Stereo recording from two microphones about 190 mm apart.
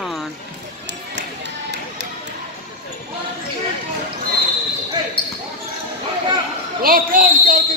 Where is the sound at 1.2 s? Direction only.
65° right (ahead or behind).